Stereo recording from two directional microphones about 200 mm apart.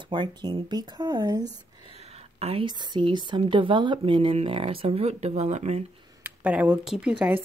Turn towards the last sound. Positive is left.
turn(degrees=-5)  # may be behind; listen again after turning